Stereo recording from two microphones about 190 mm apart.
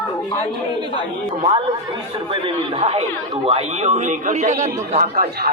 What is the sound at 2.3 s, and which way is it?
Speech, 30° right (ahead or behind).